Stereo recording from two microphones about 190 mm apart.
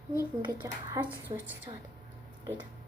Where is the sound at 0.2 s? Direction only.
20° right (ahead or behind).